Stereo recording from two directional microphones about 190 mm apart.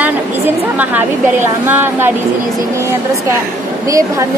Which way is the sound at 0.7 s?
10° right (ahead or behind).